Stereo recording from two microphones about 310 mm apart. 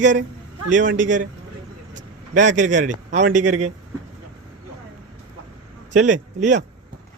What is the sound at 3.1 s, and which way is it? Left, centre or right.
Speech, right.